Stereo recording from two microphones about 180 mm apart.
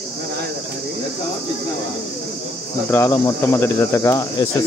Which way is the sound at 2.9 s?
15° left (ahead or behind).